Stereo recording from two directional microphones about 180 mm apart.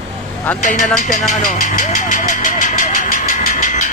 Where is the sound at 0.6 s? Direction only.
45° left (ahead or behind).